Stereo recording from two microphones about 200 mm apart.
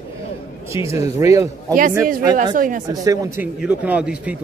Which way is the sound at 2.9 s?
15° right (ahead or behind).